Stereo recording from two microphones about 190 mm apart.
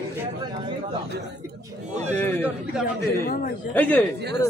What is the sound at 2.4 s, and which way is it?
Speech, 5° right (ahead or behind).